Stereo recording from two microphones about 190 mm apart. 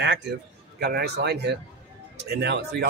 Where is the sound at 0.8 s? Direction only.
55° right (ahead or behind).